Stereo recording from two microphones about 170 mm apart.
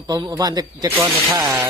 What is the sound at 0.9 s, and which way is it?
Speech, 10° right (ahead or behind).